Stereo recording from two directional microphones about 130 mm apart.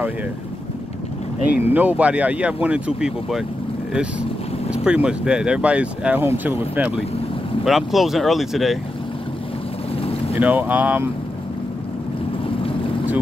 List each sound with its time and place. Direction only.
1.6 s speech: 15° right (ahead or behind)
7.6 s speech: centre (ahead or behind)
10.4 s speech: 15° right (ahead or behind)
12.4 s boat: 45° left (ahead or behind)